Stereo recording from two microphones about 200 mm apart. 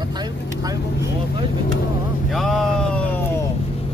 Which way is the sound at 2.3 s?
Centre (ahead or behind).